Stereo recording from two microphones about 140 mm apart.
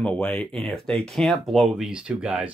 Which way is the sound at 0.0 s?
10° left (ahead or behind).